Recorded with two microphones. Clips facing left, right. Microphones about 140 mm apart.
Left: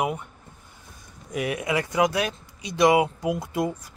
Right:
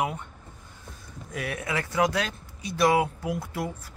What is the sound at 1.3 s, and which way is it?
Speech, 15° left (ahead or behind).